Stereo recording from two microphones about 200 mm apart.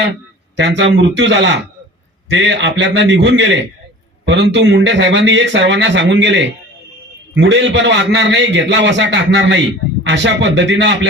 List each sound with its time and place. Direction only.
0.5 s a man's voice: 60° right (ahead or behind)